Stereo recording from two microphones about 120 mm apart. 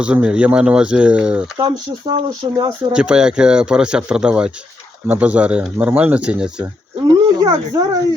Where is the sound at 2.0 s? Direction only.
40° right (ahead or behind).